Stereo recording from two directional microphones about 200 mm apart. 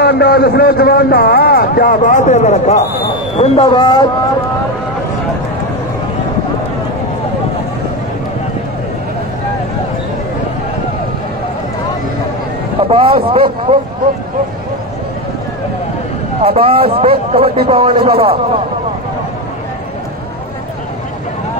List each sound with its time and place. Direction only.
0.0 s a man's voice: 55° left (ahead or behind); by 4.1 s 20° left (ahead or behind)
12.8 s speech: 25° right (ahead or behind)
16.4 s speech: 30° right (ahead or behind)